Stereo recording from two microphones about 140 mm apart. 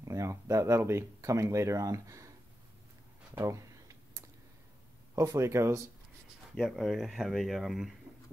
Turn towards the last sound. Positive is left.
turn(degrees=0)  # may be behind; listen again after turning